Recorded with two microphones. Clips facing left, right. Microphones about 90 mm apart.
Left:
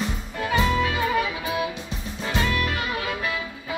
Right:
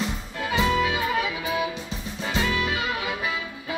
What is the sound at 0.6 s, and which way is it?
Music, 5° right (ahead or behind).